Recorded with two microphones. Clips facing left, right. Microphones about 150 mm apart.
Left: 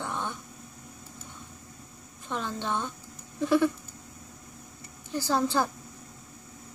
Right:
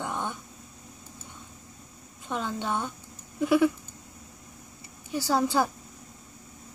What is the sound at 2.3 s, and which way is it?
Speech, 15° right (ahead or behind).